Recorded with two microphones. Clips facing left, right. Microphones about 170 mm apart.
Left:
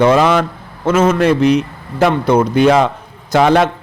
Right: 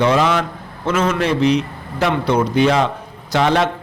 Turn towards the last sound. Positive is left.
turn(degrees=50)  # may be behind; listen again after turning